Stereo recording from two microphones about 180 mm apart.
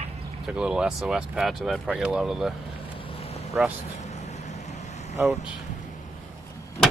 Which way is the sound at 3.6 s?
5° right (ahead or behind).